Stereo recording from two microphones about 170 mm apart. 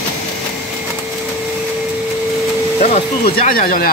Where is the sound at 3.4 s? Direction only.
55° left (ahead or behind).